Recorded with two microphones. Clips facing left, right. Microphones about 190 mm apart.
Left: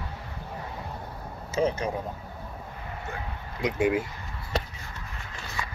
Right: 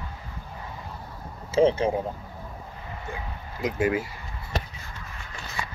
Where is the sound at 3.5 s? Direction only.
5° right (ahead or behind).